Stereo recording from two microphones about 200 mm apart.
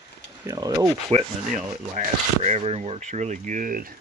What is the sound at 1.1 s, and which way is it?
Speech, 30° right (ahead or behind).